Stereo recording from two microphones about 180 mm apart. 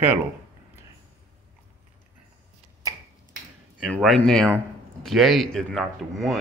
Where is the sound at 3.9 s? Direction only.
5° left (ahead or behind).